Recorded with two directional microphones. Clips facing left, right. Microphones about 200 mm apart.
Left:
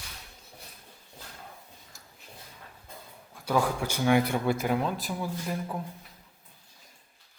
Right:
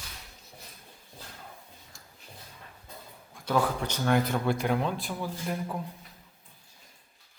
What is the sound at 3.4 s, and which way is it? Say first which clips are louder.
A man's voice: even; 10° left (ahead or behind).